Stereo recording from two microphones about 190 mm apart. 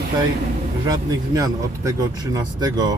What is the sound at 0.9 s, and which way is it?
Speech, 20° right (ahead or behind).